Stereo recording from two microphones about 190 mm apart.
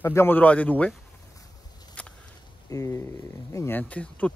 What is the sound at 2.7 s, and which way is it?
Speech, 15° left (ahead or behind).